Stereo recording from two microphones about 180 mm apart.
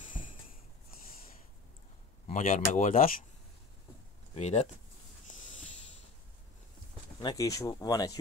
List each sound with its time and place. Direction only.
2.2 s speech: 45° left (ahead or behind)
4.4 s speech: 35° left (ahead or behind)
7.2 s speech: 20° left (ahead or behind)